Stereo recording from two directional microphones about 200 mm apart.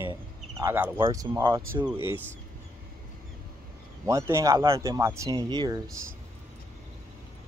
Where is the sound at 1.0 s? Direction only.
15° right (ahead or behind).